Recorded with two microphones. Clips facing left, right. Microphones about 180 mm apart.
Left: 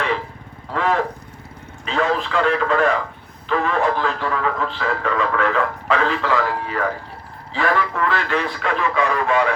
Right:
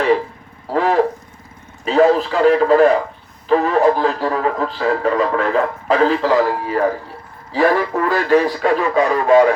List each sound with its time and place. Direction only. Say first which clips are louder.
0.7 s speech: right 5 dB; 35° right (ahead or behind)